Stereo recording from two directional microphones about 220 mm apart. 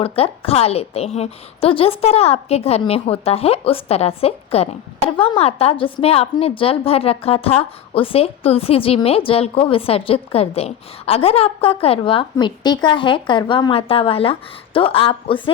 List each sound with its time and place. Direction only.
0.0 s a woman's voice: 25° left (ahead or behind)